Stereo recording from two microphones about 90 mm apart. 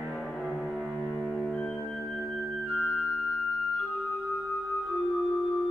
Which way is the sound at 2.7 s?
5° left (ahead or behind).